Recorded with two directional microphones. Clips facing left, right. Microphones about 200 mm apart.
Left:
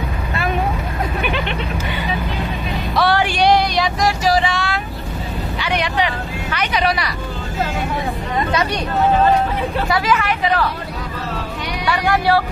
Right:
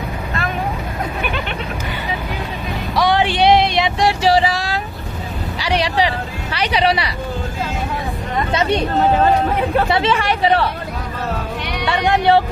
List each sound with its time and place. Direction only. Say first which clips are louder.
3.0 s a sound: right 1 dB; 20° right (ahead or behind)
5.6 s vehicle: right 3 dB; 35° right (ahead or behind)
8.5 s speech: right 5 dB; 25° right (ahead or behind)
9.8 s speech: right 1 dB; 25° right (ahead or behind)
11.8 s speech: right 2 dB; 25° right (ahead or behind)